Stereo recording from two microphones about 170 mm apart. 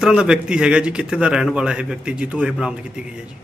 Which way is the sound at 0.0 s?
5° right (ahead or behind).